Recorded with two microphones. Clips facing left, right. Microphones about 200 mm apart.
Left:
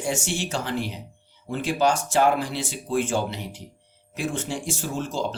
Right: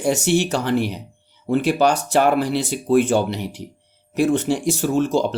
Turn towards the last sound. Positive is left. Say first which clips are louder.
# right 9 dB
turn(degrees=-70)  # may be behind; listen again after turning